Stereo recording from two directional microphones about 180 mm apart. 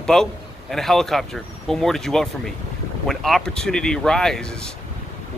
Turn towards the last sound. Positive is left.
turn(degrees=5)  # may be behind; listen again after turning